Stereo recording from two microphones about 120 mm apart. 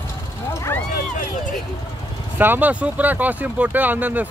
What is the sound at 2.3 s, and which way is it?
Speech, 15° right (ahead or behind).